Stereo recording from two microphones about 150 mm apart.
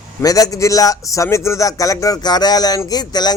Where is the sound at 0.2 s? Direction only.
25° left (ahead or behind).